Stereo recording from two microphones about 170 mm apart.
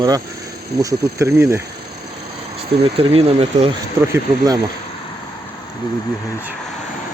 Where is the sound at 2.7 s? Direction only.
35° right (ahead or behind).